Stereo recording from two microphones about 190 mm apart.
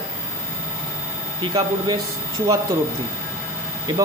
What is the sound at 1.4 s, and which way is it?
Speech, 20° right (ahead or behind).